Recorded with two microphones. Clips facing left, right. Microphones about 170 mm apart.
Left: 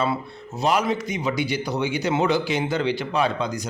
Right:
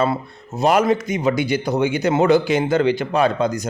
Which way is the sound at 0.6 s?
50° right (ahead or behind).